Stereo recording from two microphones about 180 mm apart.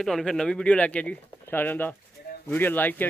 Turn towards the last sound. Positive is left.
turn(degrees=10)  # may be behind; listen again after turning